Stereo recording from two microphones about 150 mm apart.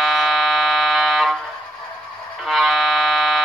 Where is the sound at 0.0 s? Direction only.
Centre (ahead or behind).